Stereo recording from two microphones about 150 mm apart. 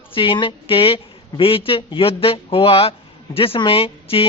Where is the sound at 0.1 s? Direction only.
35° left (ahead or behind).